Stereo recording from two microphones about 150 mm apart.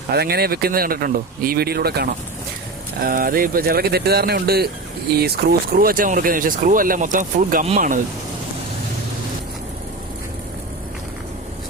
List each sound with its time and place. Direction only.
0.1 s speech: 90° right
3.0 s speech: 70° right (ahead or behind); by 7.8 s 50° right (ahead or behind)